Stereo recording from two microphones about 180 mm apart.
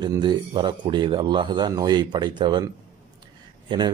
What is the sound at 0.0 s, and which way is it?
Speech, 25° right (ahead or behind).